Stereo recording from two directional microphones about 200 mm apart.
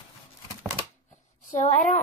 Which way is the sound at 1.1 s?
35° left (ahead or behind).